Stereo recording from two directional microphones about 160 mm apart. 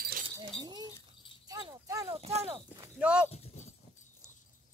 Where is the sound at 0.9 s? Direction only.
30° left (ahead or behind).